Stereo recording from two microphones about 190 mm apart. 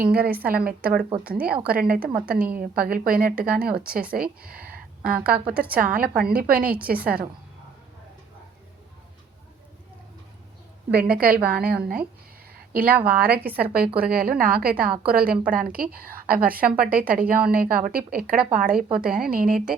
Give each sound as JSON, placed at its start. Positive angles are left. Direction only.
{"t": 0.0, "sound": "a woman's voice", "side_deg": -55}
{"t": 5.3, "sound": "a woman's voice", "side_deg": -5}
{"t": 5.7, "sound": "a woman's voice", "side_deg": -50}
{"t": 6.6, "sound": "a woman's voice", "side_deg": -5}
{"t": 7.0, "sound": "a woman's voice", "side_deg": -50}
{"t": 11.1, "sound": "a woman's voice", "side_deg": -50}
{"t": 12.5, "sound": "a sound", "side_deg": -50}
{"t": 13.1, "sound": "a woman's voice", "side_deg": -55}